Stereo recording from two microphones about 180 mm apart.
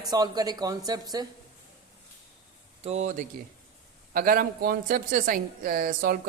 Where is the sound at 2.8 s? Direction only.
40° right (ahead or behind).